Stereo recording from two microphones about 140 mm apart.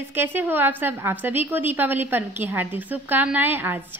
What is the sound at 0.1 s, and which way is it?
A woman's voice, 15° right (ahead or behind).